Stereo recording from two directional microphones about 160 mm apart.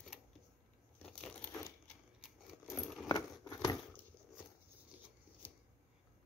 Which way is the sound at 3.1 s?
20° left (ahead or behind).